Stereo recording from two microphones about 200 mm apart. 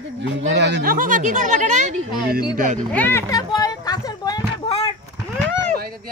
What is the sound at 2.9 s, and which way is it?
Speech, 10° left (ahead or behind).